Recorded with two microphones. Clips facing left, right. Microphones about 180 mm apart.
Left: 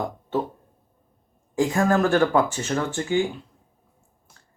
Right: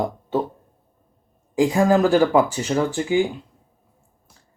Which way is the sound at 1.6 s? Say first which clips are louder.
Right 4 dB; 15° right (ahead or behind).